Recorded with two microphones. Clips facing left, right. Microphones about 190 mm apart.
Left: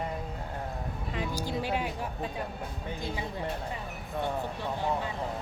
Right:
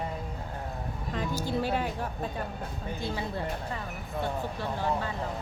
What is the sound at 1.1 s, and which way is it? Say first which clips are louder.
Speech: right 3 dB; 15° left (ahead or behind).